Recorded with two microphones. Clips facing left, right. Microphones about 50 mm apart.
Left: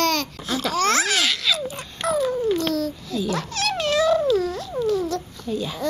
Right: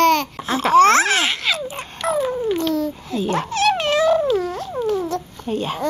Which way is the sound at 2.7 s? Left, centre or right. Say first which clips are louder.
Right 3 dB; right.